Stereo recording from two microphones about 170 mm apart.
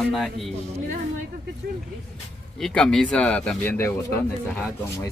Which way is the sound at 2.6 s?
5° left (ahead or behind).